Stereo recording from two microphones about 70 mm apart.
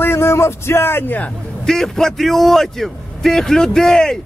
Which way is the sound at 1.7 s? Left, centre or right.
Centre.